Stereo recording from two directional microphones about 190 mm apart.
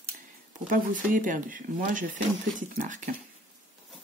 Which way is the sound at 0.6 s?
45° right (ahead or behind).